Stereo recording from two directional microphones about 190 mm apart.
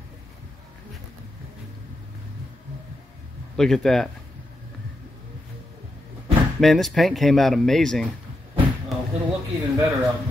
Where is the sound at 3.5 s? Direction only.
Centre (ahead or behind).